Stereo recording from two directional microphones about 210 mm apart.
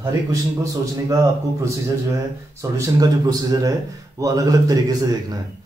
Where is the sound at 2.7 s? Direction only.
15° right (ahead or behind).